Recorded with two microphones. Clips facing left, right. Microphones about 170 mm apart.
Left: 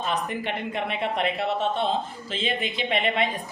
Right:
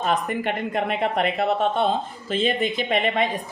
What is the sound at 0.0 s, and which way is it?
Speech, 50° right (ahead or behind).